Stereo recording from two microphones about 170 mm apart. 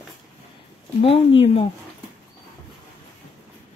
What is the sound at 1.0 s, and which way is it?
Speech, 35° left (ahead or behind).